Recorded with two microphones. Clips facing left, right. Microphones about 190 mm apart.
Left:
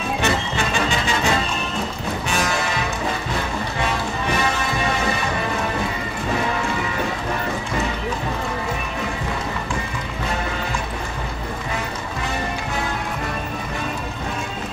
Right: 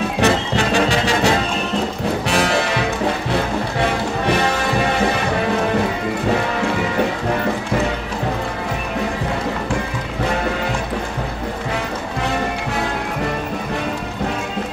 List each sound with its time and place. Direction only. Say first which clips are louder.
0.2 s music: right 7 dB; 70° right (ahead or behind)